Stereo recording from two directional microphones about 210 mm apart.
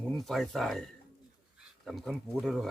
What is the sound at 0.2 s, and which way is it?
Speech, centre (ahead or behind).